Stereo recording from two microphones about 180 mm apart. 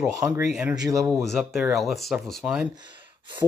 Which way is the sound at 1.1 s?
Centre (ahead or behind).